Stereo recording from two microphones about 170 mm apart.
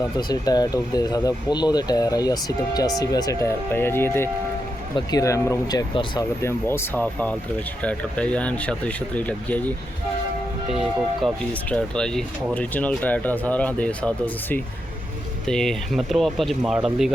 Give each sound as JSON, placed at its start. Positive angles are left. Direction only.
{"t": 0.2, "sound": "speech", "side_deg": 25}
{"t": 6.4, "sound": "speech", "side_deg": 15}
{"t": 11.7, "sound": "speech", "side_deg": 5}
{"t": 15.4, "sound": "speech", "side_deg": 5}